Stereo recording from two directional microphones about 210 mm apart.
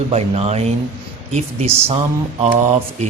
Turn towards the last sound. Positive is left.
turn(degrees=-35)  # may be behind; listen again after turning